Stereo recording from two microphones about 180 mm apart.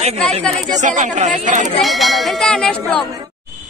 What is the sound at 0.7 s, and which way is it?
Speech, 45° right (ahead or behind).